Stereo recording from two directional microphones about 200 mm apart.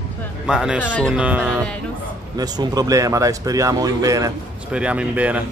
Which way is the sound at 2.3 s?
20° right (ahead or behind).